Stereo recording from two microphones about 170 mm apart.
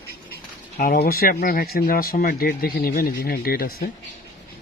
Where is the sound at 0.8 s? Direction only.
60° left (ahead or behind).